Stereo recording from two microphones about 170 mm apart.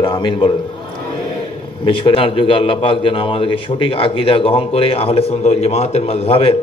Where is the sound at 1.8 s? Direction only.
30° left (ahead or behind).